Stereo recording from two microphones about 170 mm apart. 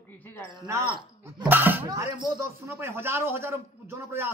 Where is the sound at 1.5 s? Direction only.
10° right (ahead or behind).